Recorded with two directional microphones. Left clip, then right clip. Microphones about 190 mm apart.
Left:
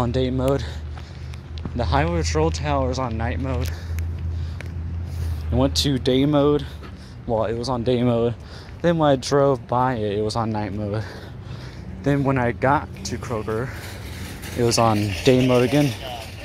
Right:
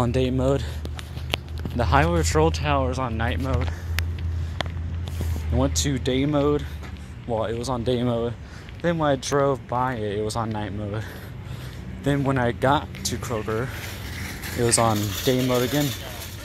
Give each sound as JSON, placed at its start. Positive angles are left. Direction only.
{"t": 0.0, "sound": "speech", "side_deg": 5}
{"t": 1.8, "sound": "speech", "side_deg": 0}
{"t": 2.5, "sound": "speech", "side_deg": 10}
{"t": 5.5, "sound": "speech", "side_deg": 25}
{"t": 13.4, "sound": "a sound", "side_deg": 10}
{"t": 15.2, "sound": "speech", "side_deg": 30}